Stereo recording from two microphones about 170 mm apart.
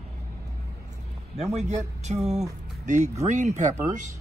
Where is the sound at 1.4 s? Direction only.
40° right (ahead or behind).